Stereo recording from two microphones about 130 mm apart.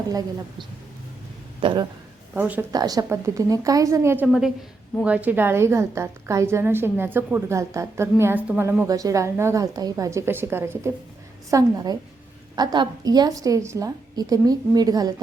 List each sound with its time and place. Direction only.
1.6 s a woman's voice: 35° right (ahead or behind)
2.3 s a woman's voice: 15° right (ahead or behind)
2.7 s a woman's voice: 30° right (ahead or behind)
4.3 s a woman's voice: 5° right (ahead or behind)
8.9 s a woman's voice: 25° right (ahead or behind)
11.5 s a woman's voice: 30° right (ahead or behind)